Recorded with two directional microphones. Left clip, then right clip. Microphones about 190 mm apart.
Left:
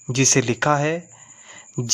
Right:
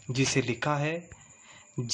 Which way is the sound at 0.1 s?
45° left (ahead or behind).